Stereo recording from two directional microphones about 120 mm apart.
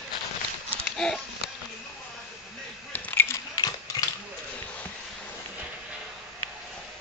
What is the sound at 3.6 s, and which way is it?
Horse, 30° left (ahead or behind).